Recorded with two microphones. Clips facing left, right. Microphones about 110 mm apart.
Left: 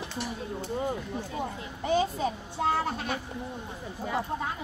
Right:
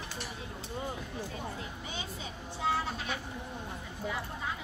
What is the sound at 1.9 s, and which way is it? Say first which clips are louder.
Speech: left 15 dB; 45° left (ahead or behind).